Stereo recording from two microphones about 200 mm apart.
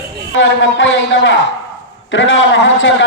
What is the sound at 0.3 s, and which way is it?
A man's voice, 70° left (ahead or behind).